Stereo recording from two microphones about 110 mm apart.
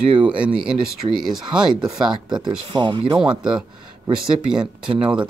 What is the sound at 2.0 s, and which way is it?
Speech, 45° right (ahead or behind).